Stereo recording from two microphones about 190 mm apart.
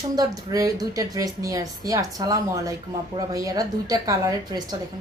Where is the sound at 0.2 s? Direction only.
20° right (ahead or behind).